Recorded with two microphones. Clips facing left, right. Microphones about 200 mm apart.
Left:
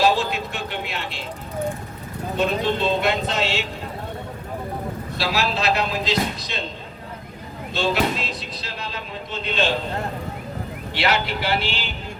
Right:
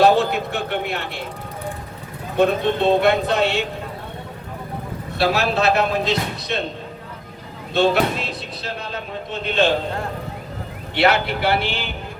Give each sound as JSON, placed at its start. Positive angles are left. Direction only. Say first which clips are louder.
{"t": 0.0, "sound": "speech", "louder": "right 5 dB", "side_deg": -60}
{"t": 2.4, "sound": "speech", "louder": "right 5 dB", "side_deg": -60}
{"t": 5.1, "sound": "speech", "louder": "right 6 dB", "side_deg": -55}
{"t": 7.7, "sound": "speech", "louder": "right 5 dB", "side_deg": -55}
{"t": 10.9, "sound": "speech", "louder": "right 5 dB", "side_deg": -55}